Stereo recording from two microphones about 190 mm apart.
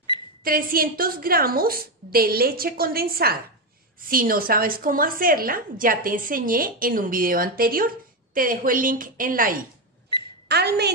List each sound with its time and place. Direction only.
0.4 s a woman's voice: 50° right (ahead or behind)
10.5 s a woman's voice: 60° right (ahead or behind)